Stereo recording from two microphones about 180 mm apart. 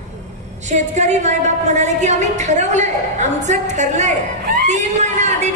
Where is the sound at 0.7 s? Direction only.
40° right (ahead or behind).